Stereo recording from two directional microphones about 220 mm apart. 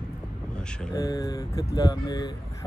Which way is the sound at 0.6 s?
5° left (ahead or behind).